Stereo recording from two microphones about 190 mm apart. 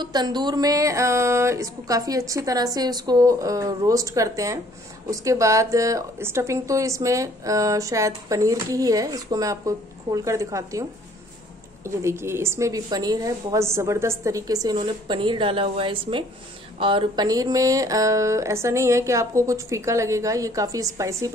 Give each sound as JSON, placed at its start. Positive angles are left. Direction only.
{"t": 0.0, "sound": "a woman's voice", "side_deg": -20}